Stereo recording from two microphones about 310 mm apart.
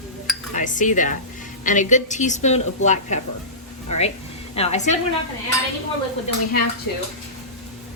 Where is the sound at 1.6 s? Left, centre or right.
Left.